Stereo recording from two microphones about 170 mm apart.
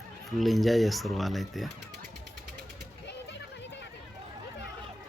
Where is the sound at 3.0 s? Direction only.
90° left.